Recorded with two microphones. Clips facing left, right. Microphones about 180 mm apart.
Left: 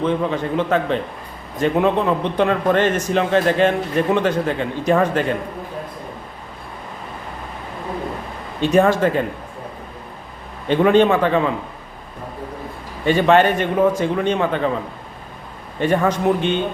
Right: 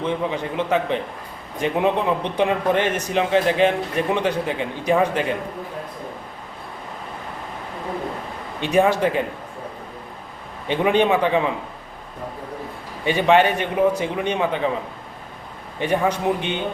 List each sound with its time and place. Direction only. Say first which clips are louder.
0.0 s a man's voice: left 4 dB; 15° right (ahead or behind)
8.6 s a man's voice: left 3 dB; 15° right (ahead or behind)
10.7 s a man's voice: left 4 dB; 15° right (ahead or behind)
13.1 s a man's voice: left 2 dB; 15° right (ahead or behind)
15.8 s a man's voice: left 3 dB; 15° right (ahead or behind)